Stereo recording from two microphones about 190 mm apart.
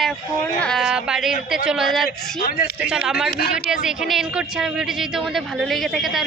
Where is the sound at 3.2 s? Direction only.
55° left (ahead or behind).